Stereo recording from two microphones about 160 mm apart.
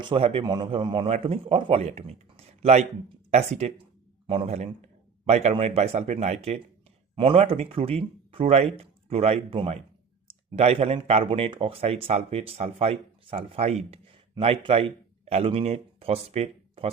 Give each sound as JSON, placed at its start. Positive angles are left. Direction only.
{"t": 0.0, "sound": "a man's voice", "side_deg": -35}